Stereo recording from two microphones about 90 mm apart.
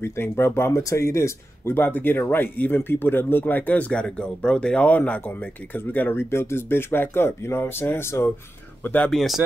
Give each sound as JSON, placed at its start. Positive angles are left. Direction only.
{"t": 0.0, "sound": "speech", "side_deg": 30}
{"t": 8.8, "sound": "speech", "side_deg": 15}
{"t": 9.1, "sound": "speech", "side_deg": 0}